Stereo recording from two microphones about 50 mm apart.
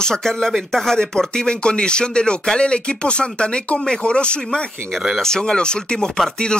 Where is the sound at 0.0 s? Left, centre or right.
Centre.